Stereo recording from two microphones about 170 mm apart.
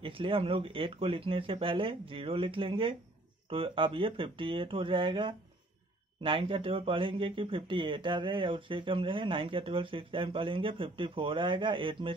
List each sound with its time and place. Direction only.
0.0 s speech: 30° right (ahead or behind)